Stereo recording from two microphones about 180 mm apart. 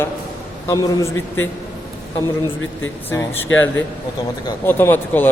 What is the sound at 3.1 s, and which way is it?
Speech, 15° left (ahead or behind).